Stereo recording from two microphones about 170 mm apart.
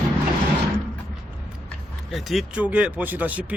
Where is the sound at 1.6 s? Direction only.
Centre (ahead or behind).